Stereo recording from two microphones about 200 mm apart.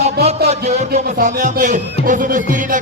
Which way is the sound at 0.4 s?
35° right (ahead or behind).